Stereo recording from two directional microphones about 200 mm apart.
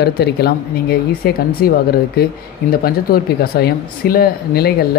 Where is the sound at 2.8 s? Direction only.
50° left (ahead or behind).